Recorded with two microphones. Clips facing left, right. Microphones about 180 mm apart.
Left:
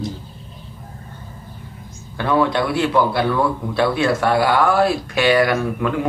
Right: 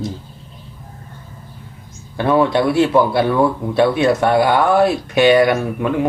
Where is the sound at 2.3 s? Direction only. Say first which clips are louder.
Right 3 dB; 25° right (ahead or behind).